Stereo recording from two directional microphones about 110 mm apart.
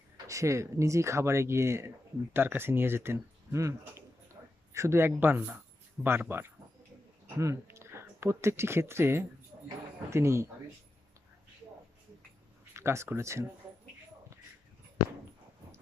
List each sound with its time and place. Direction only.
0.3 s speech: 30° right (ahead or behind)
12.7 s speech: 25° right (ahead or behind)